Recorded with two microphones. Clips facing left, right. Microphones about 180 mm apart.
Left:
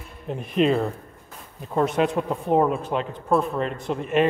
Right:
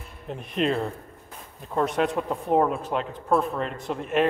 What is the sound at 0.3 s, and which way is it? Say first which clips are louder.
Speech: left 5 dB; 5° left (ahead or behind).